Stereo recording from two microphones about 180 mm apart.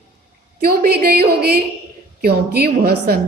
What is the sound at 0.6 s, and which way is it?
A woman's voice, 60° right (ahead or behind).